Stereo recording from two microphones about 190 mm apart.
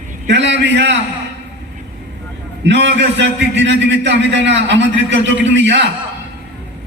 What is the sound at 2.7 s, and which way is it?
A man's voice, 70° right (ahead or behind).